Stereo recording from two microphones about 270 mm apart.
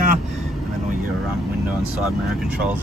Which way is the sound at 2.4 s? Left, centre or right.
Centre.